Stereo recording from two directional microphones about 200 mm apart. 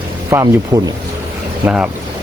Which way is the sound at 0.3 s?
10° right (ahead or behind).